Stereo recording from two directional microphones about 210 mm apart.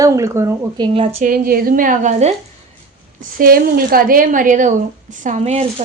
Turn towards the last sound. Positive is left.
turn(degrees=-30)  # may be behind; listen again after turning